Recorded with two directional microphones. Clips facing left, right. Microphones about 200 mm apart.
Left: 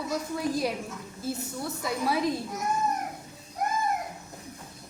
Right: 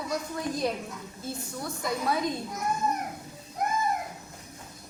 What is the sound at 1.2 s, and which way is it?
A woman's voice, 5° left (ahead or behind).